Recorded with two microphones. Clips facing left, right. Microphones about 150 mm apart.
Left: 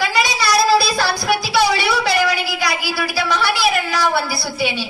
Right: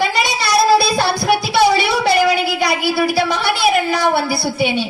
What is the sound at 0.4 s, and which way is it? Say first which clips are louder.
Child singing: right 3 dB; 55° right (ahead or behind).